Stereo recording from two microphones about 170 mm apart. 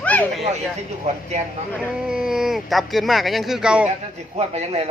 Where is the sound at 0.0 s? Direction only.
10° left (ahead or behind).